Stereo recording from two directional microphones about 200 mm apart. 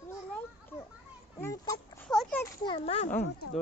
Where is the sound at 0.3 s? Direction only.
10° left (ahead or behind).